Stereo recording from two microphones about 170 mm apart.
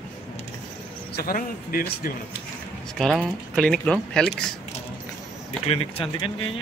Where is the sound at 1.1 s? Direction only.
65° left (ahead or behind).